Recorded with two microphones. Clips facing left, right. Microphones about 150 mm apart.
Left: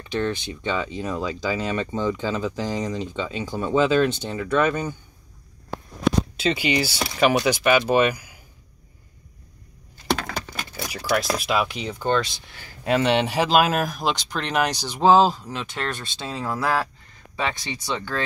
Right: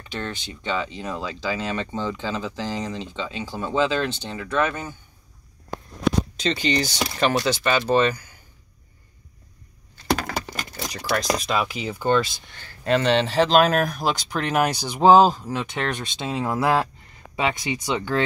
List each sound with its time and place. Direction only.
0.1 s speech: 15° left (ahead or behind)
6.3 s speech: 10° left (ahead or behind)
10.7 s a sound: 10° left (ahead or behind)
11.1 s speech: 5° left (ahead or behind)
12.6 s speech: 10° left (ahead or behind); by 18.2 s 20° right (ahead or behind)